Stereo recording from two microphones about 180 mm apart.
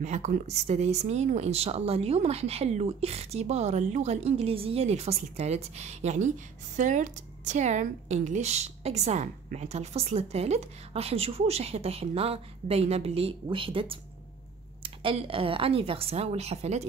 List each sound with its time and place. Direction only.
0.0 s speech: 40° right (ahead or behind)